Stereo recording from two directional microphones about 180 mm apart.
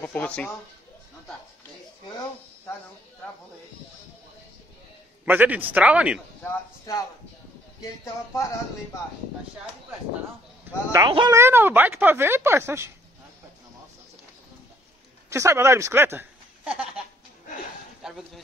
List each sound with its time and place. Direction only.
0.0 s speech: 10° left (ahead or behind)
5.2 s speech: 10° right (ahead or behind)
6.4 s speech: 20° left (ahead or behind)
10.6 s speech: 20° right (ahead or behind)
11.3 s speech: 15° right (ahead or behind)
15.2 s speech: 15° right (ahead or behind)
18.0 s speech: centre (ahead or behind)